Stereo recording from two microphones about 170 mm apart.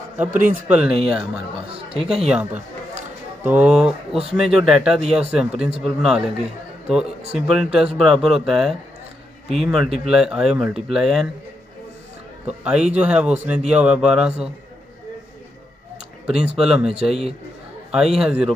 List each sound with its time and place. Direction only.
0.3 s speech: 50° right (ahead or behind)
0.7 s a man's voice: 5° right (ahead or behind)
12.4 s a man's voice: 5° right (ahead or behind)
16.5 s a man's voice: 5° right (ahead or behind)
16.9 s a man's voice: 35° right (ahead or behind)
17.9 s a man's voice: 5° right (ahead or behind)